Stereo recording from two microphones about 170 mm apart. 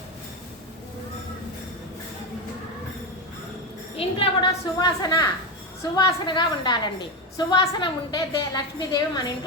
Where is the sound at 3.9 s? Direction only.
35° left (ahead or behind).